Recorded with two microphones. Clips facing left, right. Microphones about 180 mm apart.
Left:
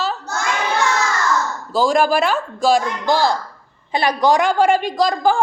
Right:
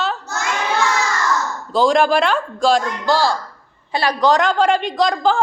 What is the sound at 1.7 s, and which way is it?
A woman's voice, 5° left (ahead or behind).